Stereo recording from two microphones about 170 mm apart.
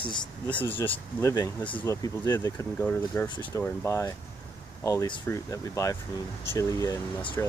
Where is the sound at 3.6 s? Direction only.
15° left (ahead or behind).